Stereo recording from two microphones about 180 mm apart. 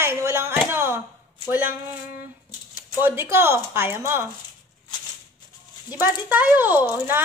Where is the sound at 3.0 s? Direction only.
15° right (ahead or behind).